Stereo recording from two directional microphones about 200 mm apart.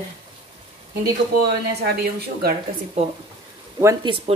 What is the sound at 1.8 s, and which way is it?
Speech, 50° right (ahead or behind).